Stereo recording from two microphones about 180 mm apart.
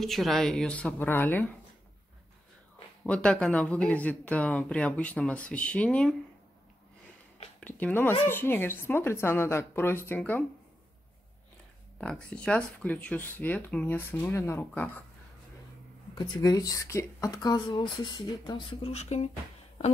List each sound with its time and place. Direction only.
0.0 s speech: centre (ahead or behind)
3.0 s speech: 5° left (ahead or behind)
7.6 s speech: 10° left (ahead or behind)
12.0 s speech: 5° left (ahead or behind)
16.2 s speech: 20° left (ahead or behind); by 19.3 s 40° left (ahead or behind)